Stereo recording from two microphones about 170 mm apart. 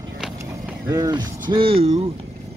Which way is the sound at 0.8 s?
20° right (ahead or behind).